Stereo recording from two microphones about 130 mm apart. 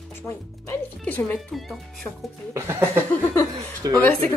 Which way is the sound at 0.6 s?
15° left (ahead or behind).